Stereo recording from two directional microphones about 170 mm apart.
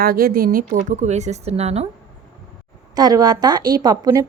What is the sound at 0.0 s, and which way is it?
A woman's voice, 60° right (ahead or behind).